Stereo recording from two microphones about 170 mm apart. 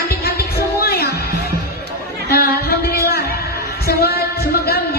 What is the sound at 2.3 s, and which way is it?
Music, 65° left (ahead or behind).